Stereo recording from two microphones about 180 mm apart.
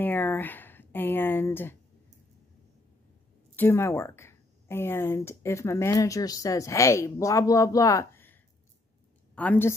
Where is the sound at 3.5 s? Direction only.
10° left (ahead or behind).